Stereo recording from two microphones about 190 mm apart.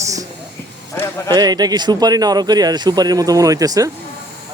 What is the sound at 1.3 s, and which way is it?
Speech, 20° right (ahead or behind).